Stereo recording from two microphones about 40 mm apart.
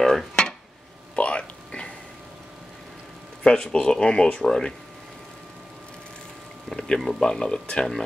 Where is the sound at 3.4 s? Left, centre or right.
Left.